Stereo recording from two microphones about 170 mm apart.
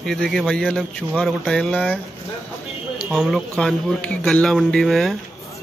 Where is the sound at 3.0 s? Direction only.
5° right (ahead or behind).